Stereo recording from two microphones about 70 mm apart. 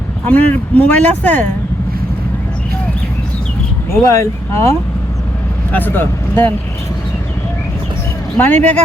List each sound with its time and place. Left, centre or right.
0.3 s speech: left
3.9 s speech: left
5.7 s speech: left
8.4 s speech: left